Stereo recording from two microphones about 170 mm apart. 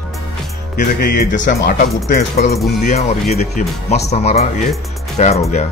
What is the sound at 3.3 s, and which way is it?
Music, 40° left (ahead or behind).